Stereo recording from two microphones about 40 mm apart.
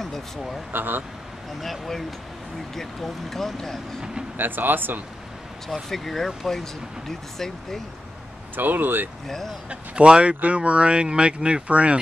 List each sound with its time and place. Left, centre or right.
0.0 s speech: centre
0.7 s speech: right
1.6 s speech: centre
4.4 s speech: right
5.9 s speech: centre
8.5 s speech: right
9.3 s speech: centre
9.7 s speech: right